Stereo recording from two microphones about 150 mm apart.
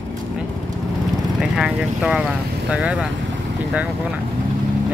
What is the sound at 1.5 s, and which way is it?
Speech, 5° right (ahead or behind).